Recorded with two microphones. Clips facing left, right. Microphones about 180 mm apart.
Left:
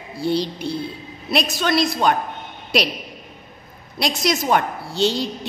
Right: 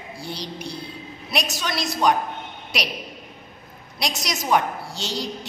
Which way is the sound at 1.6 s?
60° left (ahead or behind).